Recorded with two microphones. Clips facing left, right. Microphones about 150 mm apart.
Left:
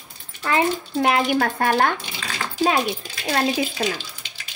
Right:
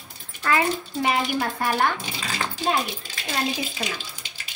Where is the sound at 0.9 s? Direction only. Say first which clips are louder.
Left 5 dB; 60° left (ahead or behind).